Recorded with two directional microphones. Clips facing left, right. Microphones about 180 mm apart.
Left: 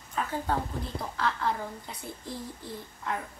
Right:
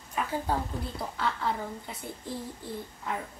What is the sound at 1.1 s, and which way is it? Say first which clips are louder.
A child's voice: left 1 dB; centre (ahead or behind).